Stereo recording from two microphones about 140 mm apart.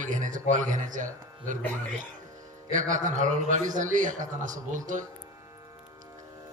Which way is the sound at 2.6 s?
65° right (ahead or behind).